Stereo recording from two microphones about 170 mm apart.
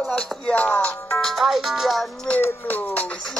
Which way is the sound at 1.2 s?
Centre (ahead or behind).